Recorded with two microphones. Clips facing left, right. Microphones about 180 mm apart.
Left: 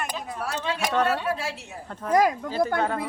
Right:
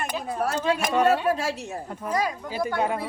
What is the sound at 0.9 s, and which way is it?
Speech, 10° right (ahead or behind).